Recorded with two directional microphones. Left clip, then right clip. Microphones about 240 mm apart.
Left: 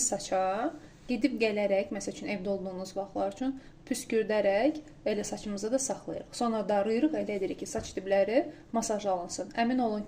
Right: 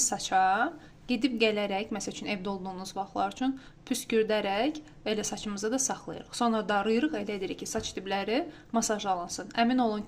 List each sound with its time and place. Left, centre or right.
0.2 s speech: right